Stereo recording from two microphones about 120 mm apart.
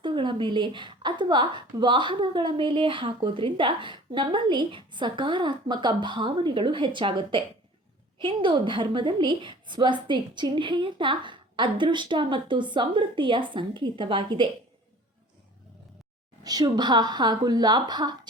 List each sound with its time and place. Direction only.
0.0 s a woman's voice: 40° right (ahead or behind)
16.4 s a woman's voice: 30° right (ahead or behind)